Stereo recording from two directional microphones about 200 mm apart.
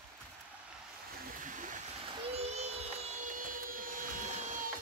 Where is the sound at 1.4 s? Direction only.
40° right (ahead or behind).